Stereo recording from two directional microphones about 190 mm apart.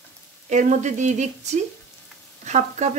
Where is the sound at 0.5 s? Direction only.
40° right (ahead or behind).